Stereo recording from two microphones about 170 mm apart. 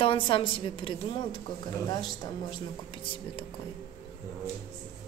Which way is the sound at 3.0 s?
30° left (ahead or behind).